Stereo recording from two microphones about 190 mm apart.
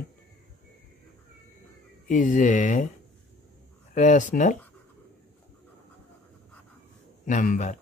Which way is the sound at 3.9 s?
40° left (ahead or behind).